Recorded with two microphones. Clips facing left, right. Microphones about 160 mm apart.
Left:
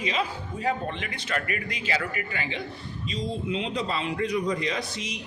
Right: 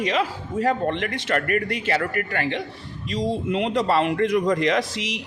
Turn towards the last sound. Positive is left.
turn(degrees=-85)